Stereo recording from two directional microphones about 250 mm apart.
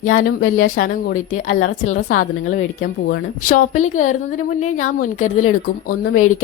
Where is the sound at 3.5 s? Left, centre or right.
Left.